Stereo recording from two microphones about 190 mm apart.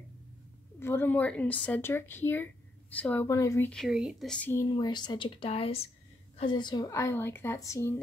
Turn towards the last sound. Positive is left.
turn(degrees=15)  # may be behind; listen again after turning